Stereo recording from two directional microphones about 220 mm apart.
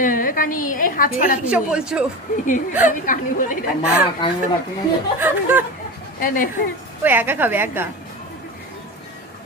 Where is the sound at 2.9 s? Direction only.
35° left (ahead or behind).